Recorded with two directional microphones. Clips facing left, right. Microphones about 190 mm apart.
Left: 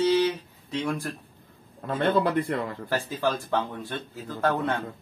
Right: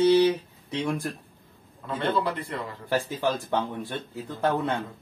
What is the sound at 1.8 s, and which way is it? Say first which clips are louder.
Speech: left 3 dB; 50° left (ahead or behind).